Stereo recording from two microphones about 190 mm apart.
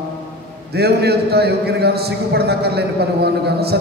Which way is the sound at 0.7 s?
60° right (ahead or behind).